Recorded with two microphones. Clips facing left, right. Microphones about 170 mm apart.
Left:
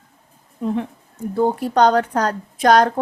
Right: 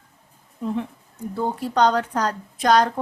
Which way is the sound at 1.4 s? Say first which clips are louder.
Left 4 dB; 50° left (ahead or behind).